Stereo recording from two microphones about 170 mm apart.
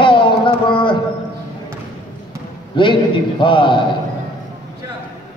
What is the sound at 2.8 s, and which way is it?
A man's voice, 30° left (ahead or behind).